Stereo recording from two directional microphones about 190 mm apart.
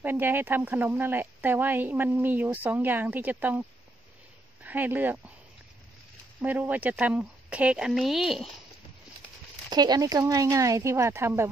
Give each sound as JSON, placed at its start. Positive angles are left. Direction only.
{"t": 0.0, "sound": "speech", "side_deg": -10}
{"t": 4.6, "sound": "speech", "side_deg": -10}
{"t": 6.4, "sound": "speech", "side_deg": -10}
{"t": 9.7, "sound": "speech", "side_deg": -20}